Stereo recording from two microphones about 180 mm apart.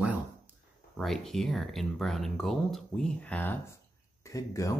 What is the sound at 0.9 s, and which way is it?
Speech, centre (ahead or behind).